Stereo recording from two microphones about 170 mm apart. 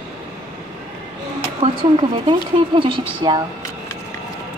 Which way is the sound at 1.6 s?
30° right (ahead or behind).